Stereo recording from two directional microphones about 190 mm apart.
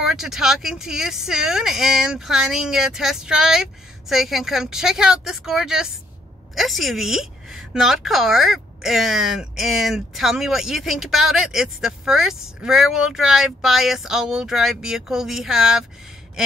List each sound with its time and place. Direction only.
0.0 s a woman's voice: centre (ahead or behind)